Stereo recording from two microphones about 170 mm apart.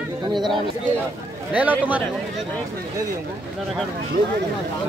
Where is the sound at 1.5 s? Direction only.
10° right (ahead or behind).